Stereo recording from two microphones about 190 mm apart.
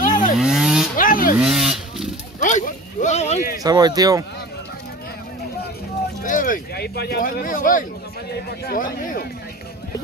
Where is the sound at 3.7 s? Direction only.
20° right (ahead or behind).